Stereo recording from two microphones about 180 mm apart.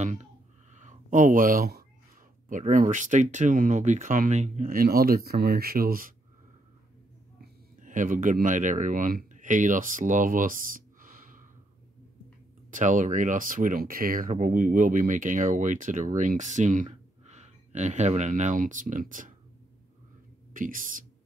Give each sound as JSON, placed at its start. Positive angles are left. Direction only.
{"t": 0.0, "sound": "speech", "side_deg": -40}
{"t": 0.7, "sound": "a sound", "side_deg": -45}
{"t": 2.5, "sound": "speech", "side_deg": -45}
{"t": 7.8, "sound": "speech", "side_deg": -45}
{"t": 12.7, "sound": "speech", "side_deg": -45}
{"t": 20.5, "sound": "speech", "side_deg": -50}